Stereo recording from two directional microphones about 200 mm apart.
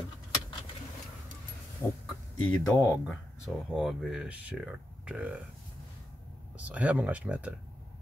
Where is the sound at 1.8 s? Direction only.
10° left (ahead or behind).